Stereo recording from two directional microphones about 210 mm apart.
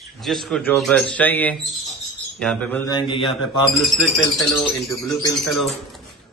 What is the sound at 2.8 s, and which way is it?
Speech, 20° left (ahead or behind).